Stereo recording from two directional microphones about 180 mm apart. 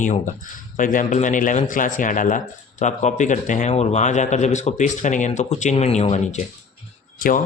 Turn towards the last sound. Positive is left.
turn(degrees=50)  # may be behind; listen again after turning